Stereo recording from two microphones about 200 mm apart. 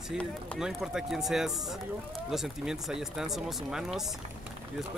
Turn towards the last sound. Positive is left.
turn(degrees=0)  # may be behind; listen again after turning